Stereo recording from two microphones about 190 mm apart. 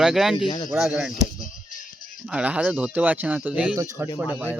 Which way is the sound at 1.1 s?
45° left (ahead or behind).